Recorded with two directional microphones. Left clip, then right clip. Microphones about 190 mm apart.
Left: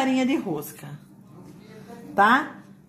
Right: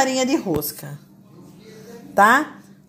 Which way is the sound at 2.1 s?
55° right (ahead or behind).